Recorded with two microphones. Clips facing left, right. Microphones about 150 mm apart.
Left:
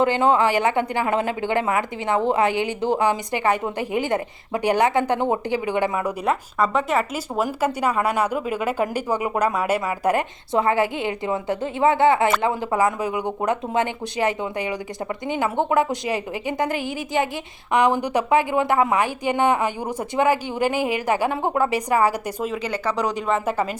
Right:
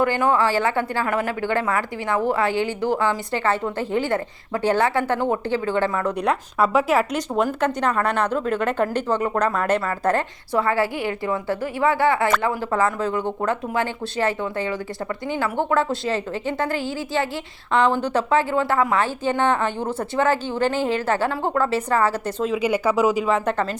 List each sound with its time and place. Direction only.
0.0 s speech: 20° left (ahead or behind)
6.2 s speech: 5° right (ahead or behind); by 22.5 s 10° left (ahead or behind)
22.5 s speech: 10° right (ahead or behind)